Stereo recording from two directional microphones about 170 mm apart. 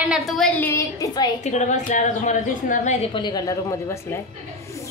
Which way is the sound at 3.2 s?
25° left (ahead or behind).